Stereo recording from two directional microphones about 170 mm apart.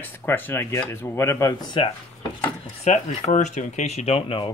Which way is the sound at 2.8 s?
40° left (ahead or behind).